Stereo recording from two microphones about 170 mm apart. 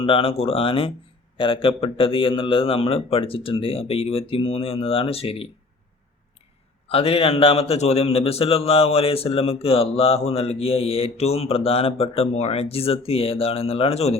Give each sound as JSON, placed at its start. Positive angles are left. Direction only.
{"t": 0.0, "sound": "a man's voice", "side_deg": 30}
{"t": 6.8, "sound": "a man's voice", "side_deg": 35}